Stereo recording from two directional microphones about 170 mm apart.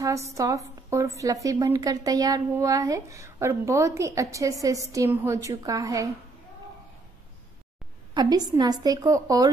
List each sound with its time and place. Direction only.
0.0 s a woman's voice: 20° right (ahead or behind)
8.1 s a woman's voice: 25° right (ahead or behind)